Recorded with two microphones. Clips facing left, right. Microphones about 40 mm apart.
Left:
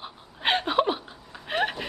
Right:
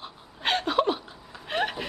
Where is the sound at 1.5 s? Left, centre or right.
Centre.